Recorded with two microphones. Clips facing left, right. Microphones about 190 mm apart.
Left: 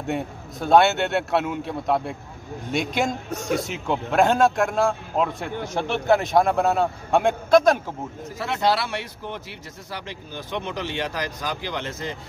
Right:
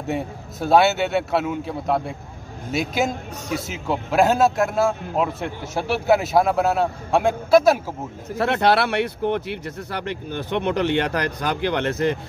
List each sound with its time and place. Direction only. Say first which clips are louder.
0.0 s a man's voice: right 1 dB; centre (ahead or behind)
8.4 s speech: right 5 dB; 60° right (ahead or behind)